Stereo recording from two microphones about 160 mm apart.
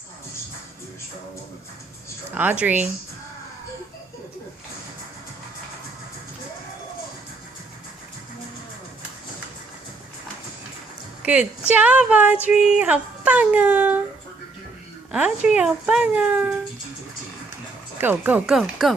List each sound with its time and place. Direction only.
2.3 s speech: 10° right (ahead or behind)
11.2 s a sound: 10° right (ahead or behind)
11.7 s speech: 10° right (ahead or behind)
15.1 s speech: 5° right (ahead or behind)
17.9 s speech: 10° right (ahead or behind)